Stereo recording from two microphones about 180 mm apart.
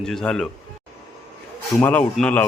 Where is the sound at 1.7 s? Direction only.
10° left (ahead or behind).